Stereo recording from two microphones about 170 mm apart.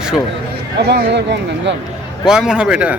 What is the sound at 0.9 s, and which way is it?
Speech, 85° right.